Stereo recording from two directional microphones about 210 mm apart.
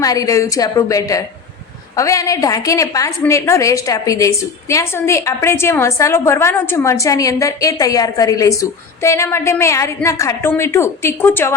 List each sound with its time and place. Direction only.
0.0 s a woman's voice: 15° left (ahead or behind)